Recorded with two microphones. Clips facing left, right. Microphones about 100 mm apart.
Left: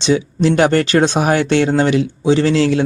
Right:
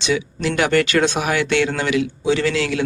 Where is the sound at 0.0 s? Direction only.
30° left (ahead or behind).